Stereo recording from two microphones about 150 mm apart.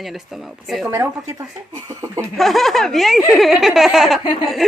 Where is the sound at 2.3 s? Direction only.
Centre (ahead or behind).